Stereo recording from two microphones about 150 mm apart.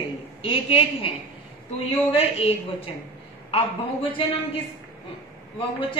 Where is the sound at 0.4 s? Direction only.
35° left (ahead or behind).